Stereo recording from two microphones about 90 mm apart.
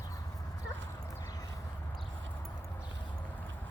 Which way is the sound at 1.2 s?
40° left (ahead or behind).